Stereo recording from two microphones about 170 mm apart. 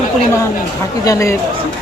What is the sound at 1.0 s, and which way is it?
Speech, 20° left (ahead or behind).